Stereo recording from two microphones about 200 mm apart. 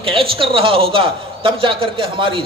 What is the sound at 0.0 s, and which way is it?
A man's voice, 25° right (ahead or behind).